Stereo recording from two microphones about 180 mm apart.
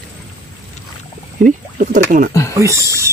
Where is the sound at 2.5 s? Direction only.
15° right (ahead or behind).